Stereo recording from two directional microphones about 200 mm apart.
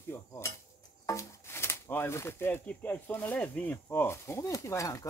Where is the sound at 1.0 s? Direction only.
15° left (ahead or behind).